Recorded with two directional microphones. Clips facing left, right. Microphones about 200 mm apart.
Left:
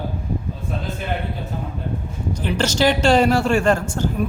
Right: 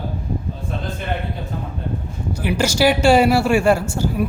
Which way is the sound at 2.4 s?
10° right (ahead or behind).